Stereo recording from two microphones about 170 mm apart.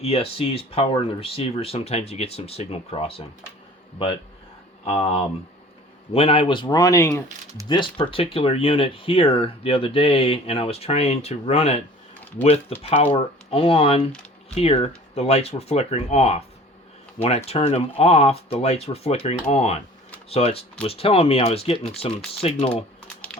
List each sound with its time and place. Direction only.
0.0 s speech: 35° left (ahead or behind); by 7.2 s 15° left (ahead or behind)
7.7 s speech: 30° left (ahead or behind)